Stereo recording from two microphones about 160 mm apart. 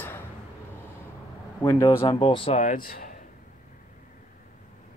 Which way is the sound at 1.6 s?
20° left (ahead or behind).